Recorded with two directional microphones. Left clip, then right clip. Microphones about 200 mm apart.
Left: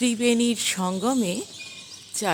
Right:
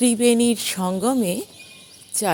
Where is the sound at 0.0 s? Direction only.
20° right (ahead or behind).